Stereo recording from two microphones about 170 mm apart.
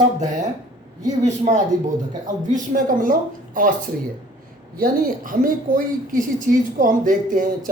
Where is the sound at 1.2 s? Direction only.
45° right (ahead or behind).